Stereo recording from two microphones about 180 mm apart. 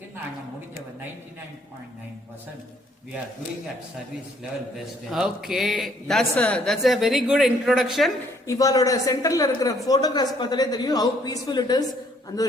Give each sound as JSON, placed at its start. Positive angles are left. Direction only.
{"t": 5.1, "sound": "speech", "side_deg": 0}
{"t": 8.4, "sound": "a woman's voice", "side_deg": 20}